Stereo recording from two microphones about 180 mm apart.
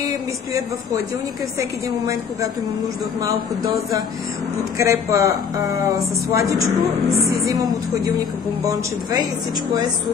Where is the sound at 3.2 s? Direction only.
20° right (ahead or behind).